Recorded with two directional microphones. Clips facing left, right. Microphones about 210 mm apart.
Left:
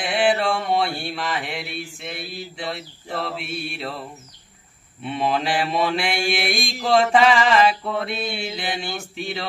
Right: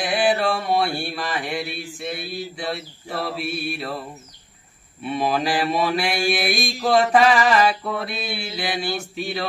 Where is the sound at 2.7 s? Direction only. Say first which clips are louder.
Right 1 dB; 25° left (ahead or behind).